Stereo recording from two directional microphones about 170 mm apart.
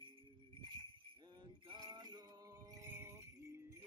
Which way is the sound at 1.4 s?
25° right (ahead or behind).